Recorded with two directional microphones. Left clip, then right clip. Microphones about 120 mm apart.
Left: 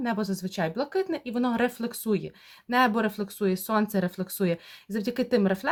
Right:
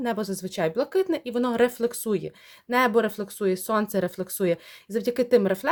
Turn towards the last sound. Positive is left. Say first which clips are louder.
# right 4 dB
turn(degrees=-30)  # may be behind; listen again after turning